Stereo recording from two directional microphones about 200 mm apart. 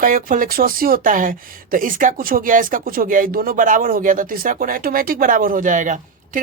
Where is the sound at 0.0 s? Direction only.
45° right (ahead or behind).